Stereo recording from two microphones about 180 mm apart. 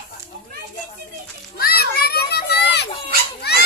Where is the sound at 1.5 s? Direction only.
55° left (ahead or behind).